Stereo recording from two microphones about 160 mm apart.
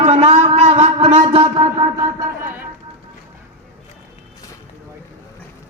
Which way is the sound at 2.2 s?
15° right (ahead or behind).